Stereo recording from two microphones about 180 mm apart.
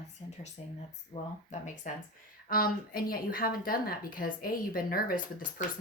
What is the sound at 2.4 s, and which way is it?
A woman's voice, 55° left (ahead or behind).